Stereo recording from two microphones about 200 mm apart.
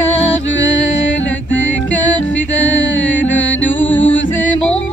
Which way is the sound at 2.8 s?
65° left (ahead or behind).